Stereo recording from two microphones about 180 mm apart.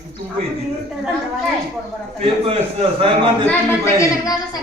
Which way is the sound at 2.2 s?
30° right (ahead or behind).